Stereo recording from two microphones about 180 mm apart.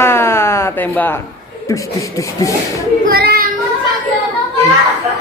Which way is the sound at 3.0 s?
60° right (ahead or behind).